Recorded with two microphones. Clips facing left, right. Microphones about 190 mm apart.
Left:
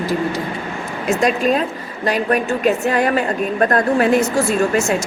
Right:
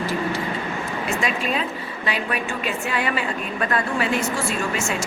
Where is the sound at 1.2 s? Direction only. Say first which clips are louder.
Left 10 dB; 40° left (ahead or behind).